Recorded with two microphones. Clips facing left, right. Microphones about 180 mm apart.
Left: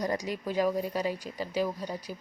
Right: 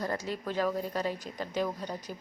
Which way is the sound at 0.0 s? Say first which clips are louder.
Left 2 dB; 15° left (ahead or behind).